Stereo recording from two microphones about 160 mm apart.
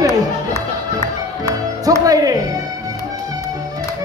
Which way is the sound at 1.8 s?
20° right (ahead or behind).